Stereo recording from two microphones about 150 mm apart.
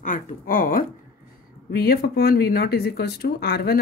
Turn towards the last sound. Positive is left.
turn(degrees=90)